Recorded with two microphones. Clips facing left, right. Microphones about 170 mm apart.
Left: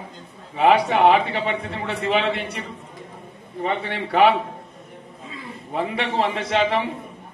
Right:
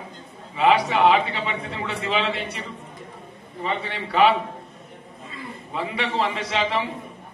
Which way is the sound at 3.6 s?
55° left (ahead or behind).